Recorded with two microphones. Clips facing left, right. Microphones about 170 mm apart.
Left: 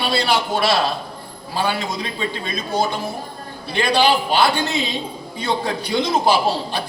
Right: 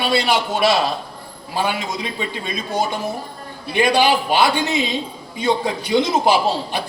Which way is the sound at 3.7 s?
15° right (ahead or behind).